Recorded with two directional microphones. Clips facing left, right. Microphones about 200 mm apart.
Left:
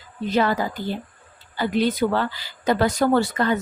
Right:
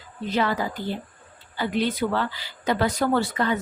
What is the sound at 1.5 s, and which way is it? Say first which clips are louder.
Speech: left 3 dB; 40° left (ahead or behind).